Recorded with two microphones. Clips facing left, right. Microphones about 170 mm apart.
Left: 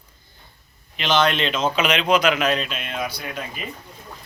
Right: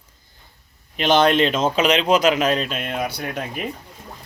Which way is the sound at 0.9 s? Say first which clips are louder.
Right 4 dB; 45° right (ahead or behind).